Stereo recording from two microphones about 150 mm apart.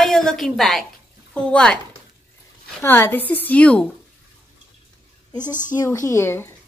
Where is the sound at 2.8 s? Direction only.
15° left (ahead or behind).